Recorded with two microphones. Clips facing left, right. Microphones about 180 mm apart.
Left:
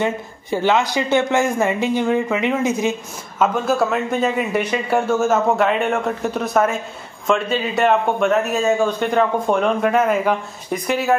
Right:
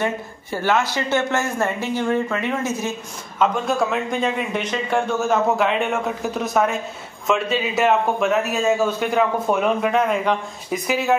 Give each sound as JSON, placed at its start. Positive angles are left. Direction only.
{"t": 0.0, "sound": "speech", "side_deg": 20}
{"t": 3.3, "sound": "a man's voice", "side_deg": 5}